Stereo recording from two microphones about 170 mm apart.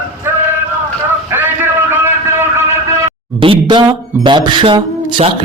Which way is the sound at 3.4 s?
30° right (ahead or behind).